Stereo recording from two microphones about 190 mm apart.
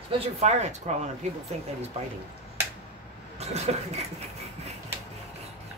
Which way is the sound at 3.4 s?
35° right (ahead or behind).